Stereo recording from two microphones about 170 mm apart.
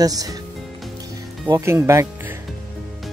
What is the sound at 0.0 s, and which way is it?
Speech, 20° right (ahead or behind).